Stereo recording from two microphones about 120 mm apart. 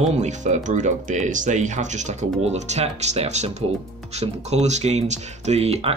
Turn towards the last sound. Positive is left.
turn(degrees=-60)  # may be behind; listen again after turning